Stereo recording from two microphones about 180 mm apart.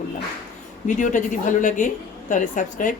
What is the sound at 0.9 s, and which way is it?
A woman's voice, 45° left (ahead or behind).